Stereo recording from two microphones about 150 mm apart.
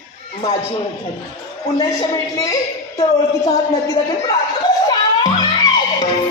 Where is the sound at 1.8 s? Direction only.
25° left (ahead or behind).